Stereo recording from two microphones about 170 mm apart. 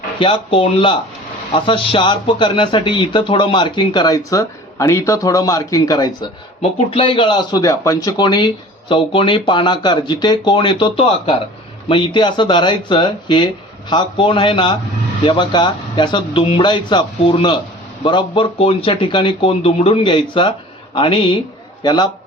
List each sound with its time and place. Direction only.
0.2 s speech: 30° left (ahead or behind)
6.6 s speech: 30° left (ahead or behind)